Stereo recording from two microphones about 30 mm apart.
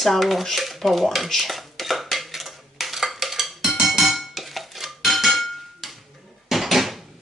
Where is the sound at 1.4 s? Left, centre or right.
Centre.